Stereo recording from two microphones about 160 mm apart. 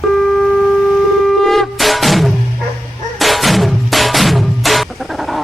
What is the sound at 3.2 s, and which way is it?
Music, centre (ahead or behind).